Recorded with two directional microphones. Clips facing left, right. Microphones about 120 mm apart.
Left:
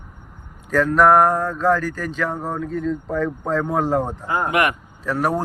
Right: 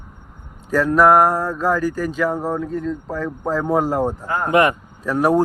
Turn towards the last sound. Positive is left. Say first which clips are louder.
# right 4 dB
turn(degrees=-15)  # may be behind; listen again after turning